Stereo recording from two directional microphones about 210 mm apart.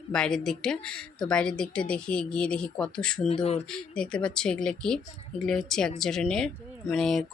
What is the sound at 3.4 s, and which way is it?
Speech, 30° left (ahead or behind).